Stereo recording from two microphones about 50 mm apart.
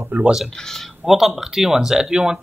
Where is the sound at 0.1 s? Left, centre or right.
Right.